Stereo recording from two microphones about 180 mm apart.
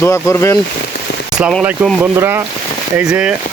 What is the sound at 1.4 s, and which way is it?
Speech, 5° right (ahead or behind).